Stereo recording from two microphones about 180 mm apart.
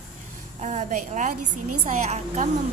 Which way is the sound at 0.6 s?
45° right (ahead or behind).